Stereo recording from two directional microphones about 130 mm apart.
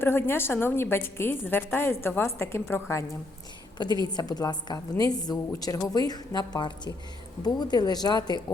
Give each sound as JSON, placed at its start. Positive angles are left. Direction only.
{"t": 0.0, "sound": "a woman's voice", "side_deg": 15}
{"t": 3.8, "sound": "a woman's voice", "side_deg": 30}